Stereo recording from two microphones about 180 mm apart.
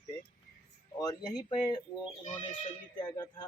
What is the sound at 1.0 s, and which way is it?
Speech, 20° left (ahead or behind).